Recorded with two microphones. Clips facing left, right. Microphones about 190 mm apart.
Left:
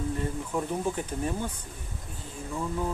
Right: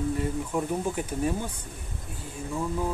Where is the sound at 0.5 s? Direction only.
10° right (ahead or behind).